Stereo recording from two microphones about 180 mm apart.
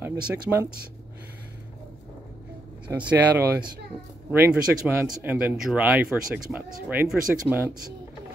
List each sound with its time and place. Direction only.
0.0 s speech: 15° right (ahead or behind)
2.9 s speech: 10° right (ahead or behind)